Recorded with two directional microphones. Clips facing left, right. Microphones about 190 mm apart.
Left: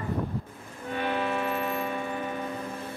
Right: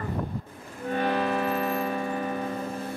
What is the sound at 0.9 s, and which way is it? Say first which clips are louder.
Music: right 3 dB; 40° right (ahead or behind).